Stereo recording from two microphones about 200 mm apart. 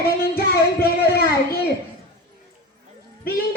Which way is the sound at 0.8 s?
50° left (ahead or behind).